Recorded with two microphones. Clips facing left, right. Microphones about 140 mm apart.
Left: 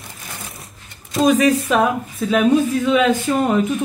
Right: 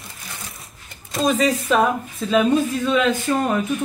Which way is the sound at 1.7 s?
Centre (ahead or behind).